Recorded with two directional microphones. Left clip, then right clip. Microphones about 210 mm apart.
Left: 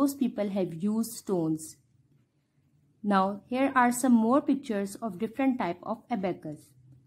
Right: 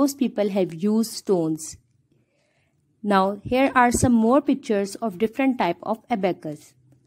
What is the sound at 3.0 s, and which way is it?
A woman's voice, 30° right (ahead or behind).